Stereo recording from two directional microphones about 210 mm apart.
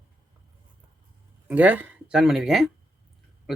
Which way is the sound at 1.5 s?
10° right (ahead or behind).